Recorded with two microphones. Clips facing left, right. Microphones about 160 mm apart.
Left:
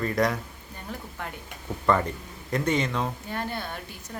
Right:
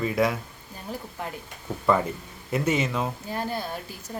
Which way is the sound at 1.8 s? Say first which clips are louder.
Right 1 dB; 5° right (ahead or behind).